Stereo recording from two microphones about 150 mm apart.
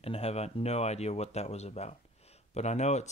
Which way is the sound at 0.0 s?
45° left (ahead or behind).